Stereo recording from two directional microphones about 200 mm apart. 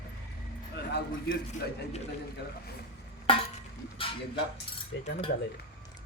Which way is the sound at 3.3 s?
25° left (ahead or behind).